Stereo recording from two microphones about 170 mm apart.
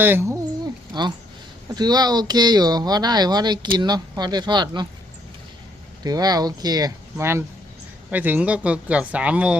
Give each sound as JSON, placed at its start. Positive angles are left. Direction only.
{"t": 0.0, "sound": "a sound", "side_deg": -15}
{"t": 1.7, "sound": "speech", "side_deg": -25}
{"t": 6.0, "sound": "speech", "side_deg": -20}